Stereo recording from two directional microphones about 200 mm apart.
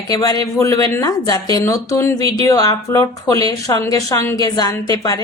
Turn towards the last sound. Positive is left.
turn(degrees=15)  # may be behind; listen again after turning